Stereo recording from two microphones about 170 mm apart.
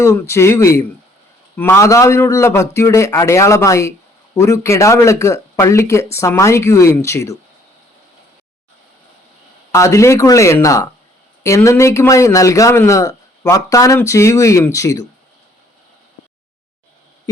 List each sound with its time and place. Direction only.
0.0 s a man's voice: 15° left (ahead or behind)
9.7 s a man's voice: 20° left (ahead or behind)